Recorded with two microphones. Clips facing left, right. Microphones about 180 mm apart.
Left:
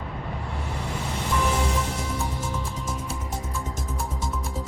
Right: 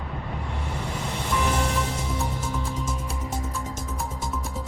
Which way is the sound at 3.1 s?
Centre (ahead or behind).